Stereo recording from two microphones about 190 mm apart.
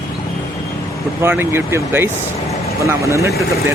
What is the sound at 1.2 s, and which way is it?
Speech, 10° right (ahead or behind).